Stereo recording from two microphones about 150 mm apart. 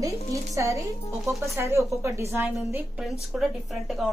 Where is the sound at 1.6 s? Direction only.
15° right (ahead or behind).